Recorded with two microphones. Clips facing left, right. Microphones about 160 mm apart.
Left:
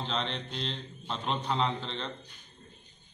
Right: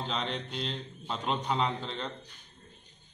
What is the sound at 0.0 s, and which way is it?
A man's voice, 10° right (ahead or behind).